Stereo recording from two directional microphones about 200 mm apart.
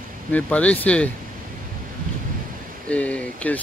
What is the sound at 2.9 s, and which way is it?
Speech, 5° left (ahead or behind).